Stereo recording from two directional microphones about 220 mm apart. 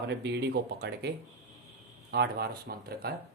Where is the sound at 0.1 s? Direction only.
50° right (ahead or behind).